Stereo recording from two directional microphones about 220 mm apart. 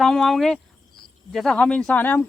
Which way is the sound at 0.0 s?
Centre (ahead or behind).